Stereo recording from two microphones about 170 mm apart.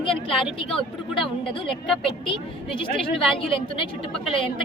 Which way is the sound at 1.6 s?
Centre (ahead or behind).